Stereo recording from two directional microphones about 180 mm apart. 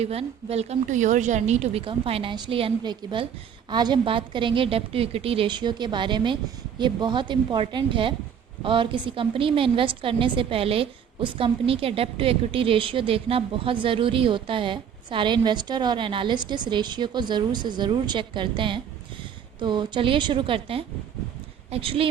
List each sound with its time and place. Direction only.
0.0 s a woman's voice: 35° right (ahead or behind)